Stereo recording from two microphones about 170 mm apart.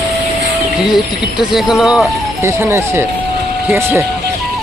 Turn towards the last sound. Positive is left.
turn(degrees=-15)  # may be behind; listen again after turning